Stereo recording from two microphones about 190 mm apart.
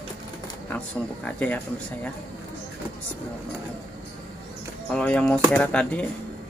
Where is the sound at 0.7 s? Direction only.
5° left (ahead or behind).